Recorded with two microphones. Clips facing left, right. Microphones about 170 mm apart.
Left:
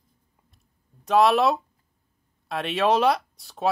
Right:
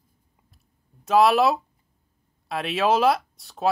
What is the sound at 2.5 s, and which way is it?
Speech, centre (ahead or behind).